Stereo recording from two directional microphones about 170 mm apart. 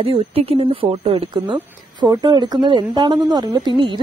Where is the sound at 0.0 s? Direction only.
35° right (ahead or behind).